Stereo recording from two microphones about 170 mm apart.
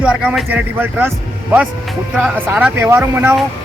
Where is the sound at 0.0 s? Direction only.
5° right (ahead or behind).